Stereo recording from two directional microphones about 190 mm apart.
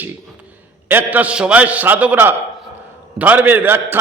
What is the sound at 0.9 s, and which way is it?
A man's voice, 10° right (ahead or behind).